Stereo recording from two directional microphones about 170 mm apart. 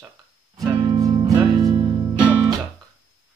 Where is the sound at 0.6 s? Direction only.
25° right (ahead or behind).